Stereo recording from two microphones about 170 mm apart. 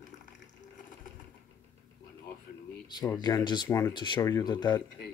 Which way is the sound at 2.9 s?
25° left (ahead or behind).